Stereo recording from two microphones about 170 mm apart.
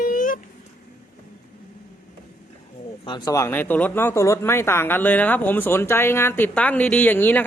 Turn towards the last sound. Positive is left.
turn(degrees=10)  # may be behind; listen again after turning